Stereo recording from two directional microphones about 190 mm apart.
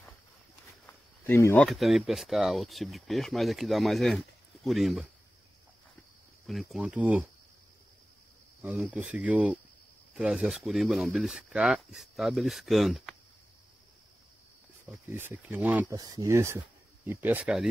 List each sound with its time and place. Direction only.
1.2 s speech: 10° left (ahead or behind)
6.4 s speech: centre (ahead or behind)
8.6 s speech: 5° right (ahead or behind)
14.9 s speech: 10° right (ahead or behind)
16.0 s speech: 20° right (ahead or behind)